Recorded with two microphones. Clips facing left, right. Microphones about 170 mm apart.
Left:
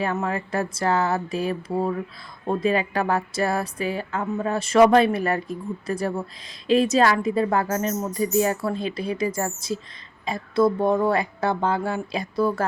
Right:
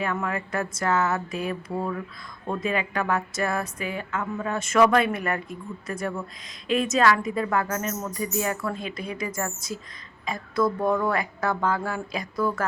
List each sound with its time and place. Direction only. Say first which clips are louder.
0.0 s a woman's voice: left 3 dB; 30° left (ahead or behind)